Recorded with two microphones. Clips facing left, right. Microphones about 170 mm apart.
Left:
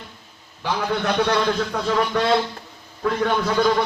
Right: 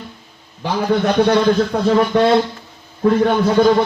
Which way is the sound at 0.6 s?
40° right (ahead or behind).